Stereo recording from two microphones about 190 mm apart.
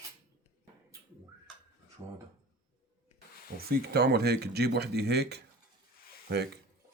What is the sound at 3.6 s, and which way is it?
Speech, 55° right (ahead or behind).